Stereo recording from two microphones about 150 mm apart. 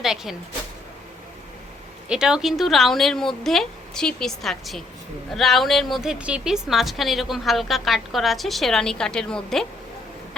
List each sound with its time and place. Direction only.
0.0 s speech: 5° right (ahead or behind)
2.0 s a woman's voice: 5° right (ahead or behind)